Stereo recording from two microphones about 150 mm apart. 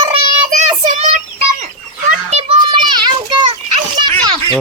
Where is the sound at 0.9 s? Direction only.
60° right (ahead or behind).